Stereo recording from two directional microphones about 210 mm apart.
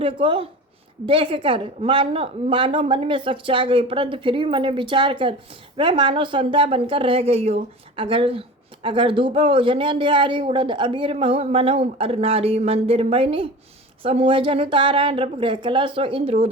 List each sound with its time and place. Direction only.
0.0 s a woman's voice: 25° right (ahead or behind)